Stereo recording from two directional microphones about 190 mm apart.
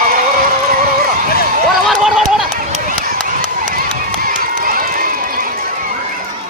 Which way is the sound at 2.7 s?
50° right (ahead or behind).